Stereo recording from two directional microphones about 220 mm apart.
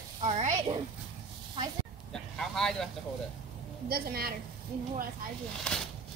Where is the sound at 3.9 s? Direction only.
45° right (ahead or behind).